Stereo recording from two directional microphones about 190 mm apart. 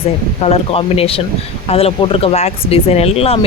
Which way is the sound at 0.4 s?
30° left (ahead or behind).